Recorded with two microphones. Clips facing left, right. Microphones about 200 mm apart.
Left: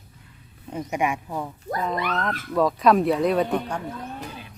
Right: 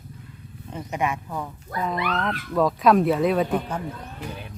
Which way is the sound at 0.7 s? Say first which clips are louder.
Left 2 dB; 10° left (ahead or behind).